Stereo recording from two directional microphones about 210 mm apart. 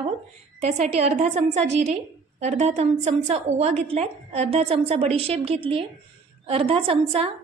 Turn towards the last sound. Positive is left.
turn(degrees=-25)  # may be behind; listen again after turning